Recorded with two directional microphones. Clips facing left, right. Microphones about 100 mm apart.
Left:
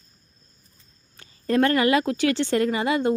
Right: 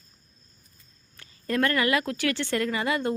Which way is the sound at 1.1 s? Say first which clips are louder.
Left 6 dB; 25° left (ahead or behind).